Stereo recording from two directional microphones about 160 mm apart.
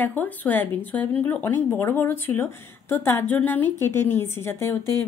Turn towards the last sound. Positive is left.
turn(degrees=15)  # may be behind; listen again after turning